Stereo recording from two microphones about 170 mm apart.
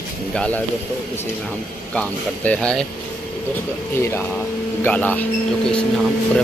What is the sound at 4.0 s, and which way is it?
Speech, 15° left (ahead or behind).